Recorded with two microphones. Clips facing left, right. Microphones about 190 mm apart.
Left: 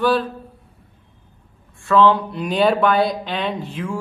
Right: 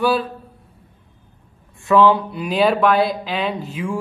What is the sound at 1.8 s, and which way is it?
Speech, 15° right (ahead or behind).